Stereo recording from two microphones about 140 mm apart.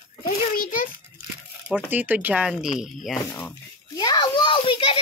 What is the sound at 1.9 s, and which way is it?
Speech, 10° right (ahead or behind).